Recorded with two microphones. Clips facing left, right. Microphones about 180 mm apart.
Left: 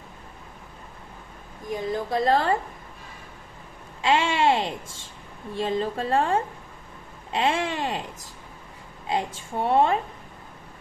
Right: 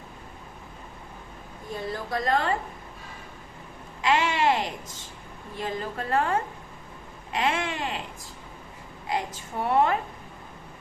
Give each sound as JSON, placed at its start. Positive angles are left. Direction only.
{"t": 1.7, "sound": "a woman's voice", "side_deg": 15}
{"t": 4.0, "sound": "a woman's voice", "side_deg": 30}
{"t": 7.3, "sound": "a sound", "side_deg": 30}
{"t": 9.0, "sound": "a woman's voice", "side_deg": 25}